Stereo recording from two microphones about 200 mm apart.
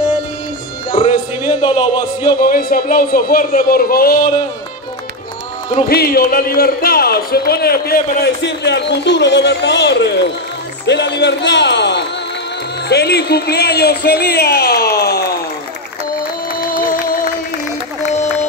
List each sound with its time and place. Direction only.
1.1 s speech: 20° left (ahead or behind)
2.4 s speech: 45° left (ahead or behind)
5.9 s a man's voice: 50° left (ahead or behind)
16.5 s music: 45° left (ahead or behind)